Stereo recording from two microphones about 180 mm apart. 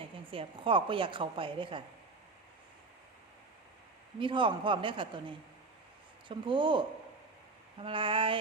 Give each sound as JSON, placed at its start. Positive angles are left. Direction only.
{"t": 0.3, "sound": "a woman's voice", "side_deg": -30}
{"t": 4.2, "sound": "a woman's voice", "side_deg": -25}
{"t": 6.2, "sound": "a woman's voice", "side_deg": -25}